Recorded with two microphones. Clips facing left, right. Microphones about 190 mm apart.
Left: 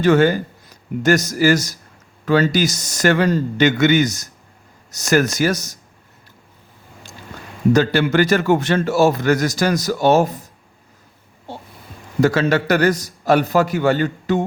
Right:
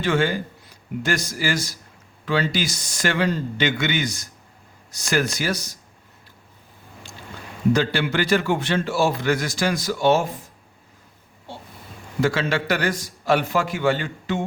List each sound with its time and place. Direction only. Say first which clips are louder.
0.0 s a man's voice: left 7 dB; 40° left (ahead or behind)
7.7 s a man's voice: left 5 dB; 45° left (ahead or behind)
12.2 s a man's voice: left 6 dB; 40° left (ahead or behind)